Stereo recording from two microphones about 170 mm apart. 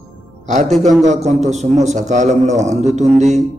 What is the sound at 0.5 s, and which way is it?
A man's voice, 45° right (ahead or behind).